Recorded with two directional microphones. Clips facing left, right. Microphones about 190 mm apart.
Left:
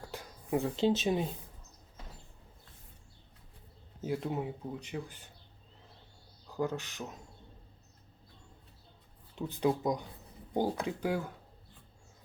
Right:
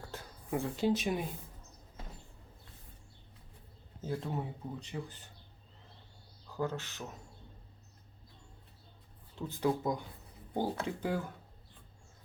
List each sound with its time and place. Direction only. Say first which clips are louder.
0.1 s speech: left 4 dB; 20° left (ahead or behind)
4.0 s speech: left 3 dB; 15° left (ahead or behind)
6.6 s speech: left 2 dB; 15° left (ahead or behind)
9.3 s speech: left 2 dB; 15° left (ahead or behind)